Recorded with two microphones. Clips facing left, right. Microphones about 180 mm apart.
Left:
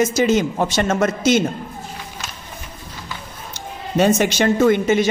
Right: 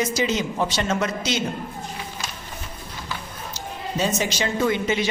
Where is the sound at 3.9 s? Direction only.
55° left (ahead or behind).